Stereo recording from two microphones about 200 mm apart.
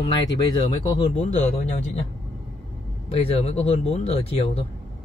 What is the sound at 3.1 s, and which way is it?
Speech, 30° left (ahead or behind).